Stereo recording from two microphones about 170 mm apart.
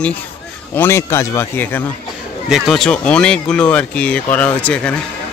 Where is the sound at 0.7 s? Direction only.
15° left (ahead or behind).